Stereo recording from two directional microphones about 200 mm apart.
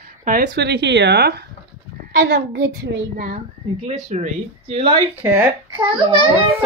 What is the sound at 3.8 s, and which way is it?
Speech, 35° right (ahead or behind).